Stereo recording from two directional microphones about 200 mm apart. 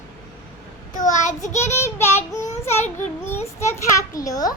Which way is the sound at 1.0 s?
40° left (ahead or behind).